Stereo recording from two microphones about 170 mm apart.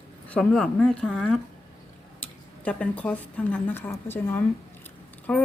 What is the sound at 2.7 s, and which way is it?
A woman's voice, 5° left (ahead or behind).